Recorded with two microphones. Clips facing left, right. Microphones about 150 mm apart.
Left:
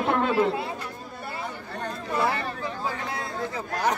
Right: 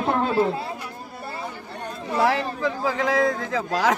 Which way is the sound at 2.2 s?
90° right.